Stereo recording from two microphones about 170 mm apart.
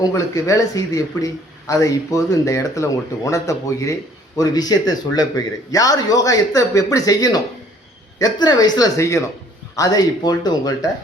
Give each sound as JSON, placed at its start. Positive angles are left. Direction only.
{"t": 0.0, "sound": "speech", "side_deg": 20}